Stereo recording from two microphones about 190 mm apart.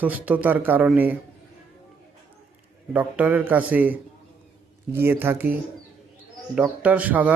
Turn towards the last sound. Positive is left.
turn(degrees=-10)  # may be behind; listen again after turning